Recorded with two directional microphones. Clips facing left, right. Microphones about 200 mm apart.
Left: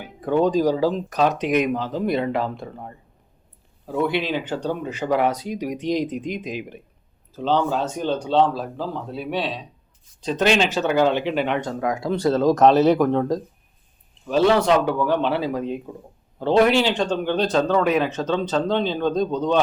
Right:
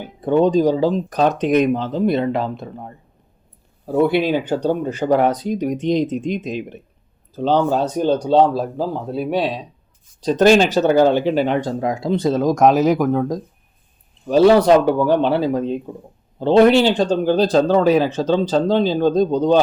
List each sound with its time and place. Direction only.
0.0 s speech: 25° right (ahead or behind)
4.2 s speech: 40° right (ahead or behind)
5.1 s speech: 5° left (ahead or behind)
5.8 s speech: 25° right (ahead or behind)
7.3 s speech: 40° right (ahead or behind); by 13.4 s 10° right (ahead or behind)
14.3 s speech: 35° right (ahead or behind)